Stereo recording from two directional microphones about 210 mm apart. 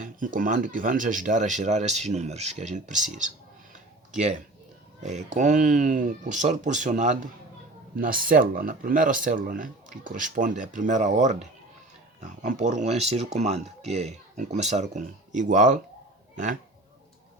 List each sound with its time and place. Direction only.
0.0 s speech: 40° right (ahead or behind)
5.0 s speech: 35° right (ahead or behind)